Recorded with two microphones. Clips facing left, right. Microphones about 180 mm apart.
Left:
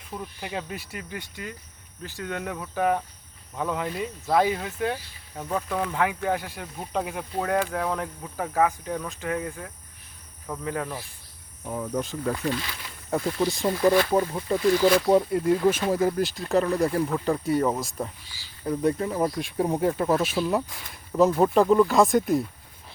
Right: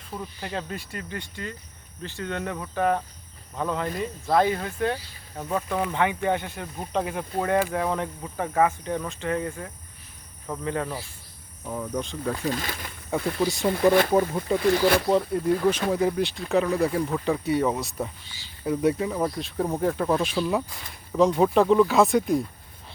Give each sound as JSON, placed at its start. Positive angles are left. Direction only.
{"t": 0.1, "sound": "speech", "side_deg": 5}
{"t": 12.5, "sound": "speech", "side_deg": -50}
{"t": 13.1, "sound": "speech", "side_deg": 0}
{"t": 19.1, "sound": "speech", "side_deg": 10}